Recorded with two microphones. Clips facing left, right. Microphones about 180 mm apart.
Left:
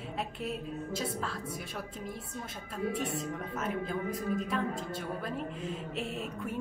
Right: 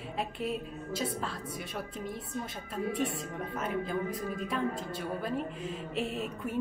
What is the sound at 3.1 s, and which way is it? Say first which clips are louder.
Speech: left 1 dB; centre (ahead or behind).